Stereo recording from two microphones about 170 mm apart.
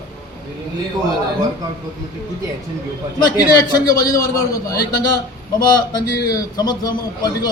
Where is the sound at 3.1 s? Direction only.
25° left (ahead or behind).